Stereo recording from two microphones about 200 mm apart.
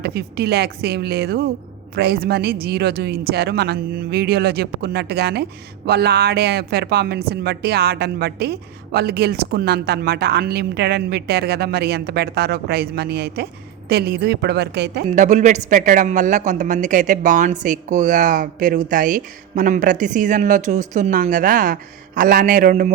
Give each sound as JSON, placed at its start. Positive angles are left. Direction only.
{"t": 0.0, "sound": "speech", "side_deg": -55}
{"t": 15.0, "sound": "speech", "side_deg": -35}